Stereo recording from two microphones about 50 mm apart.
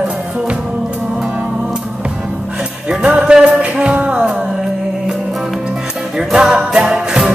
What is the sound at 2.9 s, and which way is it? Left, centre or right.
Music, centre.